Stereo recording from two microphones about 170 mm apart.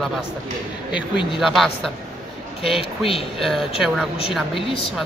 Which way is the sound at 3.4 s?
Centre (ahead or behind).